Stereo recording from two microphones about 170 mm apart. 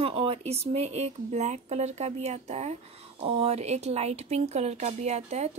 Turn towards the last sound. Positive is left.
turn(degrees=-40)  # may be behind; listen again after turning